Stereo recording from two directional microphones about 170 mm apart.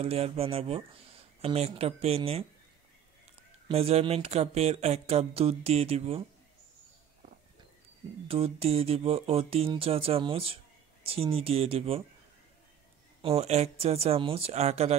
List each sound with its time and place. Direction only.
0.0 s speech: 35° right (ahead or behind)
3.6 s speech: 35° right (ahead or behind)
8.3 s speech: 35° right (ahead or behind)
13.2 s speech: 35° right (ahead or behind)